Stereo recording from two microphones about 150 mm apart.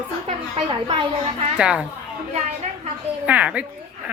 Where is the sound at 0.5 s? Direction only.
35° right (ahead or behind).